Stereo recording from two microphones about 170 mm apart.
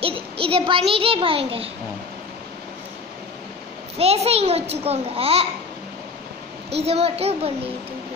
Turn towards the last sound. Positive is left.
turn(degrees=-35)  # may be behind; listen again after turning